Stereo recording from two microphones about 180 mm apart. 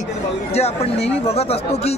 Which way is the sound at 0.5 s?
35° left (ahead or behind).